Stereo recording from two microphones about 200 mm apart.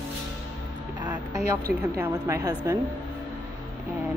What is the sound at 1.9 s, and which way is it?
Speech, 15° right (ahead or behind).